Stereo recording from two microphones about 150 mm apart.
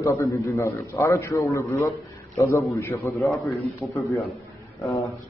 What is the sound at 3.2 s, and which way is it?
Speech, centre (ahead or behind).